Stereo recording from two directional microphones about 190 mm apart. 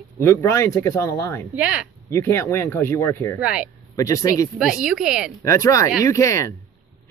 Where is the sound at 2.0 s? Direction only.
15° left (ahead or behind).